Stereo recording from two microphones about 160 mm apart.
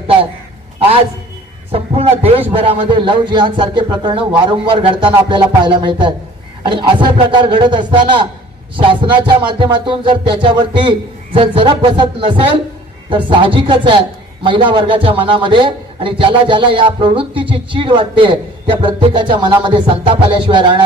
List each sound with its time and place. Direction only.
1.7 s a sound: 40° right (ahead or behind)
2.5 s a man's voice: 35° right (ahead or behind)
5.3 s music: 30° right (ahead or behind)
6.6 s a man's voice: 30° right (ahead or behind)